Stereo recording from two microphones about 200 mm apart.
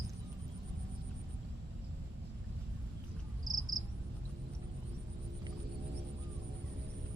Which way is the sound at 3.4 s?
20° right (ahead or behind).